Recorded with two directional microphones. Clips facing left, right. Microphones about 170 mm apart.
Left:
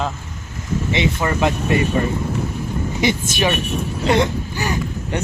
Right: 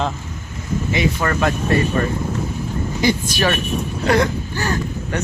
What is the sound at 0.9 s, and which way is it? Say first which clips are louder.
Speech: even; 20° left (ahead or behind).